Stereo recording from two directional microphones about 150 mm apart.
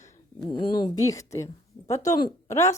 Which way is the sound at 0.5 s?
30° left (ahead or behind).